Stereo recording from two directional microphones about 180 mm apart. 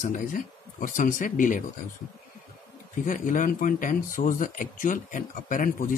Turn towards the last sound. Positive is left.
turn(degrees=45)  # may be behind; listen again after turning